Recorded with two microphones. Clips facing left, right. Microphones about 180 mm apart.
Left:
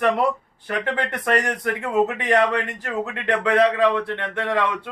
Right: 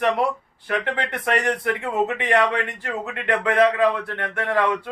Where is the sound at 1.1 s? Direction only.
45° left (ahead or behind).